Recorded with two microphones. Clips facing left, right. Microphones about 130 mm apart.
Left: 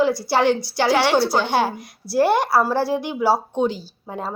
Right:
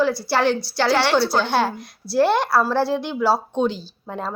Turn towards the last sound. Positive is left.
turn(degrees=5)  # may be behind; listen again after turning